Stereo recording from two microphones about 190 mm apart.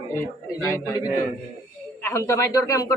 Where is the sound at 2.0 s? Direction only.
15° left (ahead or behind).